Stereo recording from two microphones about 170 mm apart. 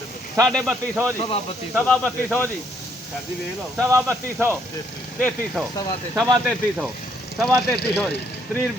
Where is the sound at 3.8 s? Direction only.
15° right (ahead or behind).